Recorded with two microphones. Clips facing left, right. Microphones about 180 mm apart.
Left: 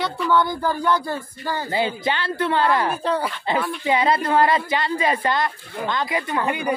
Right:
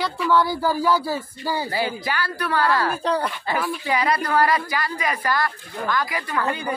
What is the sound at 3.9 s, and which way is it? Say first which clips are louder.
A woman's voice: left 4 dB; 25° left (ahead or behind).